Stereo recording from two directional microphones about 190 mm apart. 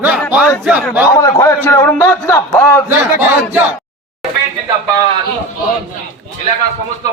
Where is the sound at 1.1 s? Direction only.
15° left (ahead or behind).